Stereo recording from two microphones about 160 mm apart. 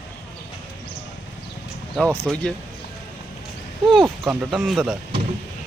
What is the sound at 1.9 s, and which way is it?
Speech, 5° left (ahead or behind).